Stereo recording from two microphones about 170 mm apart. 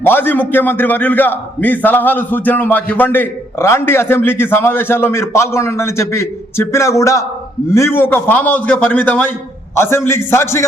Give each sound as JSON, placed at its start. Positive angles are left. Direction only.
{"t": 0.0, "sound": "a man's voice", "side_deg": 10}